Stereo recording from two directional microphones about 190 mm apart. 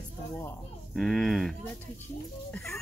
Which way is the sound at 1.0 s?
Centre (ahead or behind).